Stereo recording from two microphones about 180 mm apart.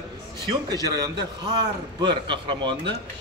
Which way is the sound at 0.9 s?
20° right (ahead or behind).